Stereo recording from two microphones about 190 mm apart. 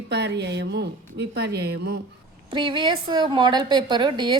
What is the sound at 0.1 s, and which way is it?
Speech, 65° right (ahead or behind).